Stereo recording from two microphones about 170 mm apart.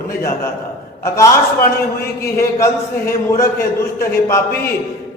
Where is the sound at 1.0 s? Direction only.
15° left (ahead or behind).